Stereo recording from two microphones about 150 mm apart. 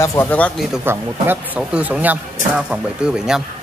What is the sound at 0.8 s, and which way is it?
A man's voice, 15° right (ahead or behind).